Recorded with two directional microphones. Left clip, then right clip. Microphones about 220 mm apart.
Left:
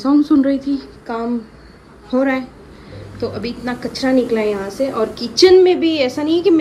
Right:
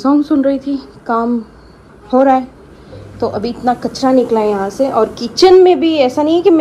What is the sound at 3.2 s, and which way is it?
Speech, centre (ahead or behind).